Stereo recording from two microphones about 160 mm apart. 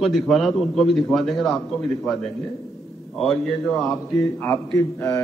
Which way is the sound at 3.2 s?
Centre (ahead or behind).